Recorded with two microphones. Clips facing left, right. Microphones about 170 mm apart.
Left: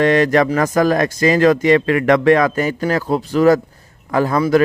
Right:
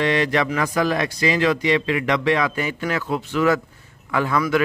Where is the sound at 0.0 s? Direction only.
45° left (ahead or behind).